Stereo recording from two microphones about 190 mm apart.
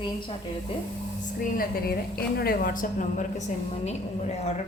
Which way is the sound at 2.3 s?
50° left (ahead or behind).